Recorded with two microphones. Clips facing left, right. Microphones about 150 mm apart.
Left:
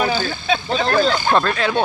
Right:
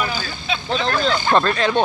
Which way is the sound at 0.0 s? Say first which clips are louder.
Left 5 dB; 45° left (ahead or behind).